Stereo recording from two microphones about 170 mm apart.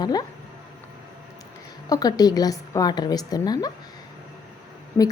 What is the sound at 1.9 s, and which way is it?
A woman's voice, 25° left (ahead or behind).